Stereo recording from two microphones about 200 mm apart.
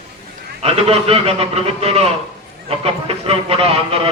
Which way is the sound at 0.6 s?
30° right (ahead or behind).